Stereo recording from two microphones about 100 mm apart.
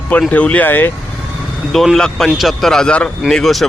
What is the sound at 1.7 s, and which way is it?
A man's voice, centre (ahead or behind).